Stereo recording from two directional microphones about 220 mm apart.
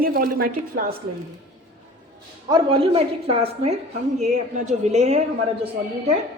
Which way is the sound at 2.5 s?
25° right (ahead or behind).